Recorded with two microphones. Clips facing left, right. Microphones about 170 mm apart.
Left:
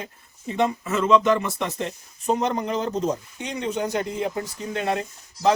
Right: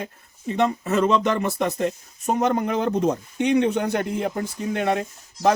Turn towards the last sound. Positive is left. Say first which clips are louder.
# right 2 dB
turn(degrees=-55)  # may be behind; listen again after turning